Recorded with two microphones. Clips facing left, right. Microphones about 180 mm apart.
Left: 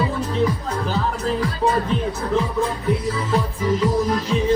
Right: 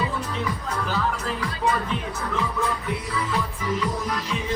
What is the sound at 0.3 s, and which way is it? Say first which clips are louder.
Music: left 7 dB; 35° left (ahead or behind).